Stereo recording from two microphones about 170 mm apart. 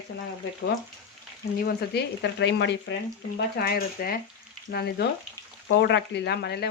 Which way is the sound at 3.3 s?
65° left (ahead or behind).